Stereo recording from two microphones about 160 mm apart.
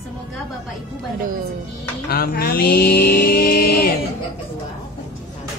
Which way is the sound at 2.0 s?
70° left (ahead or behind).